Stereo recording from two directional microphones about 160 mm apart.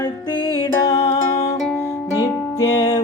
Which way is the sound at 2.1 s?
20° left (ahead or behind).